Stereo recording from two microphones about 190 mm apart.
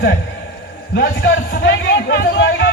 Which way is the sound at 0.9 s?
60° left (ahead or behind).